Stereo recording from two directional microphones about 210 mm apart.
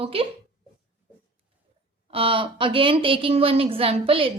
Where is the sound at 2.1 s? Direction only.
25° right (ahead or behind).